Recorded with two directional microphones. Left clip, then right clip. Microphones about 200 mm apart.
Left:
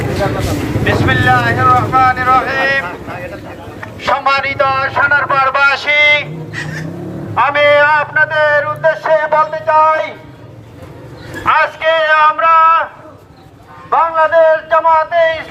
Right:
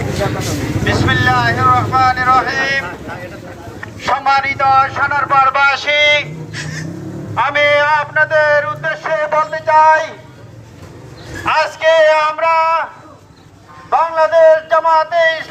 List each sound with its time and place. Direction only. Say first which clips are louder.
0.9 s speech: left 2 dB; 5° right (ahead or behind)
3.8 s a man's voice: left 2 dB; 10° left (ahead or behind); by 6.2 s 50° left (ahead or behind)
7.3 s a man's voice: left 3 dB; 50° left (ahead or behind); by 9.4 s 20° left (ahead or behind)
9.4 s speech: left 2 dB; 5° left (ahead or behind)
9.7 s a man's voice: right 2 dB; 10° right (ahead or behind)
11.4 s a man's voice: left 1 dB; 60° right (ahead or behind)
13.9 s a man's voice: left 1 dB; 50° right (ahead or behind); by 15.4 s 20° right (ahead or behind)